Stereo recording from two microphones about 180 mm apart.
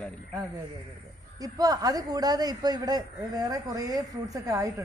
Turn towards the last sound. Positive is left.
turn(degrees=-20)  # may be behind; listen again after turning